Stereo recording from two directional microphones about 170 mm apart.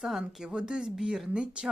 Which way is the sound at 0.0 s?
5° right (ahead or behind).